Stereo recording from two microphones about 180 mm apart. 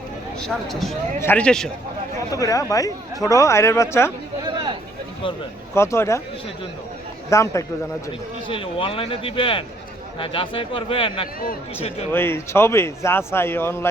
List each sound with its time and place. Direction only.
0.3 s speech: centre (ahead or behind)
2.3 s speech: 20° left (ahead or behind)
4.5 s a sound: 25° right (ahead or behind)
5.7 s speech: 15° left (ahead or behind)
7.3 s speech: 15° left (ahead or behind)
8.4 s a man's voice: 30° left (ahead or behind)
12.1 s speech: 15° left (ahead or behind)